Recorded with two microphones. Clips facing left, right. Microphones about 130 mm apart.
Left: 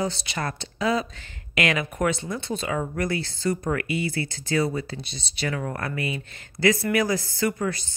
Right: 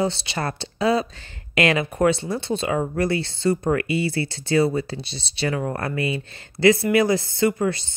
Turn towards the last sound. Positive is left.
turn(degrees=-25)  # may be behind; listen again after turning